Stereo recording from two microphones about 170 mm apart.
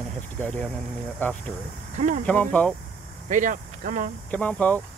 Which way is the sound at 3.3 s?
50° right (ahead or behind).